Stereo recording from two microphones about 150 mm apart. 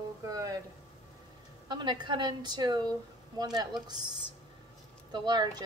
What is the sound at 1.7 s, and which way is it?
A woman's voice, 30° right (ahead or behind).